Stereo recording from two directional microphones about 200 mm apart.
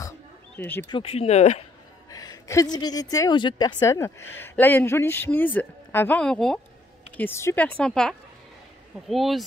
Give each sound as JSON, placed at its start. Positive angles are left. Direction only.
{"t": 0.6, "sound": "a woman's voice", "side_deg": 10}
{"t": 0.9, "sound": "speech", "side_deg": 30}
{"t": 2.0, "sound": "a woman's voice", "side_deg": 15}